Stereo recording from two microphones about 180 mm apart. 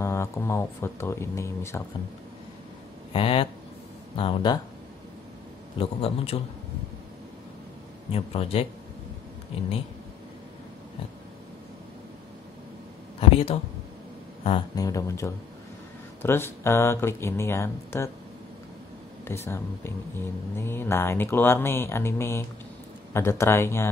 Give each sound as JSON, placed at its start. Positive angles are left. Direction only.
{"t": 0.0, "sound": "speech", "side_deg": 15}
{"t": 3.1, "sound": "speech", "side_deg": 30}
{"t": 5.8, "sound": "a man's voice", "side_deg": 30}
{"t": 8.1, "sound": "a man's voice", "side_deg": 35}
{"t": 13.3, "sound": "speech", "side_deg": 35}
{"t": 14.8, "sound": "speech", "side_deg": 20}
{"t": 19.2, "sound": "speech", "side_deg": 15}